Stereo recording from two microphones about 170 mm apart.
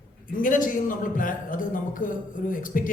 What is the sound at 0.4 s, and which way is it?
Speech, 55° left (ahead or behind).